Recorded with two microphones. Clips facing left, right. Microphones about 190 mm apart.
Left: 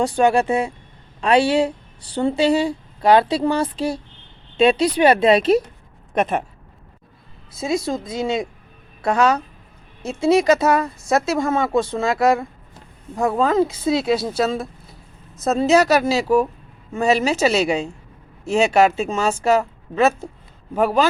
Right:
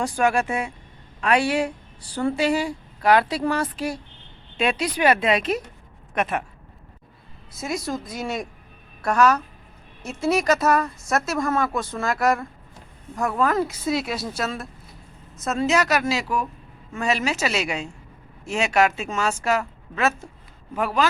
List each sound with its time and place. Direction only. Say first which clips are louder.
0.0 s speech: left 5 dB; 30° left (ahead or behind)
7.6 s speech: left 6 dB; 25° left (ahead or behind)